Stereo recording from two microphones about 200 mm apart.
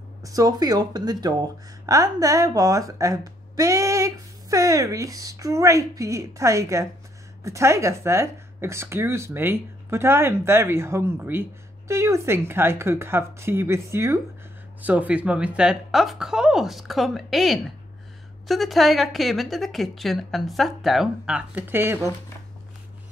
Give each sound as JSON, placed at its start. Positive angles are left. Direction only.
{"t": 0.2, "sound": "a woman's voice", "side_deg": -15}